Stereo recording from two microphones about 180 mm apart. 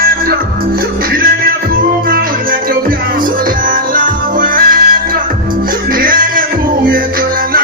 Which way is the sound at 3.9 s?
50° right (ahead or behind).